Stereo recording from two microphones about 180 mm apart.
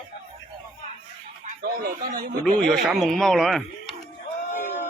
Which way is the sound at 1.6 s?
55° right (ahead or behind).